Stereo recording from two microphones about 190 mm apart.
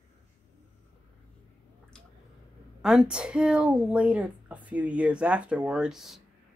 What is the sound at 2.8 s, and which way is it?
Speech, 5° right (ahead or behind).